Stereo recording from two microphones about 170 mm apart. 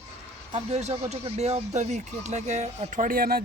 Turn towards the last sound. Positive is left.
turn(degrees=-60)  # may be behind; listen again after turning